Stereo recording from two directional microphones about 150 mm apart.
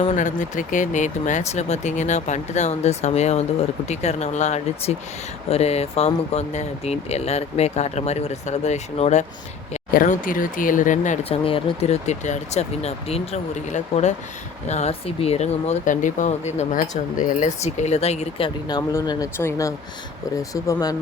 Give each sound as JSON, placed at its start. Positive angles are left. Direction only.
{"t": 0.2, "sound": "speech", "side_deg": 55}
{"t": 9.9, "sound": "speech", "side_deg": 65}
{"t": 11.2, "sound": "speech", "side_deg": 40}
{"t": 18.8, "sound": "speech", "side_deg": 25}